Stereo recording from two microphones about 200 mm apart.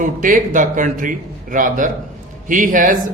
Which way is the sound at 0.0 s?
40° right (ahead or behind).